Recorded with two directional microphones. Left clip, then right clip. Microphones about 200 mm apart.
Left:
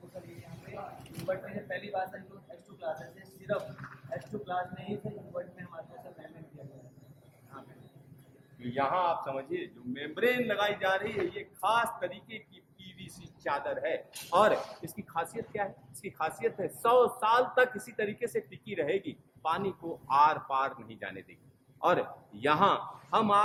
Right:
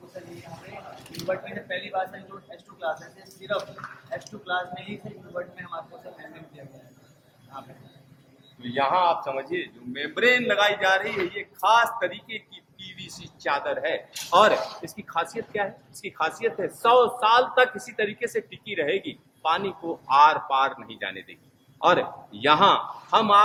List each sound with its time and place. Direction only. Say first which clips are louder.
4.4 s a man's voice: right 7 dB; 5° left (ahead or behind)
8.7 s a man's voice: right 7 dB; 10° right (ahead or behind); by 23.4 s 5° left (ahead or behind)